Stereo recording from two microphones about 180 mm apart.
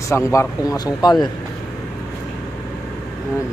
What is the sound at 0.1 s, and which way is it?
Speech, 15° left (ahead or behind).